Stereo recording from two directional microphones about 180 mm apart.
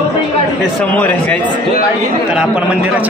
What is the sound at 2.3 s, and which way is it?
Speech, 5° right (ahead or behind).